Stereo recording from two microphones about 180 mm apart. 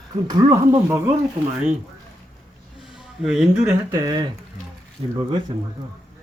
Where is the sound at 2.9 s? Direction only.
5° right (ahead or behind).